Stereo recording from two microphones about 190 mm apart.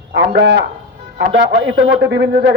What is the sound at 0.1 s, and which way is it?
A man's voice, 65° right (ahead or behind).